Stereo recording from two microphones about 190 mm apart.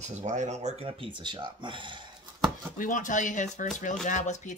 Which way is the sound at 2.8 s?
40° left (ahead or behind).